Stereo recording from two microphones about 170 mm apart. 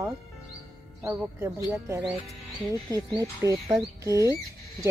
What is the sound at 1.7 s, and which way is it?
Speech, 15° right (ahead or behind).